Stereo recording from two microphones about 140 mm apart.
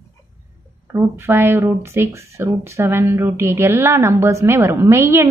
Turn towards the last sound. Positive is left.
turn(degrees=-20)  # may be behind; listen again after turning